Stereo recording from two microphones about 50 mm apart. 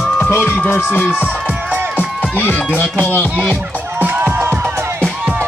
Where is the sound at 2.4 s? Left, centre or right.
Left.